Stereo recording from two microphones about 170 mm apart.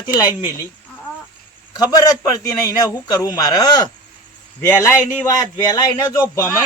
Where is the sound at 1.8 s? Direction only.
25° left (ahead or behind).